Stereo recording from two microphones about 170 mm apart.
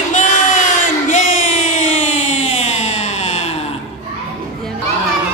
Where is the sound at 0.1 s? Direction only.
50° left (ahead or behind).